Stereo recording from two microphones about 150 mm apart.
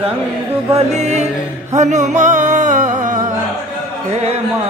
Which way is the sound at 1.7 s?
50° right (ahead or behind).